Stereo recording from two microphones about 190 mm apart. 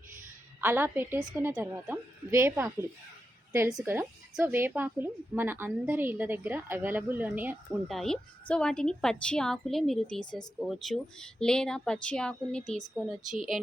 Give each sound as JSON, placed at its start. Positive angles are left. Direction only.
{"t": 0.6, "sound": "a woman's voice", "side_deg": -10}
{"t": 7.9, "sound": "a woman's voice", "side_deg": 0}